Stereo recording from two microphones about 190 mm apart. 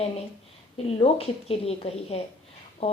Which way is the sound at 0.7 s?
30° left (ahead or behind).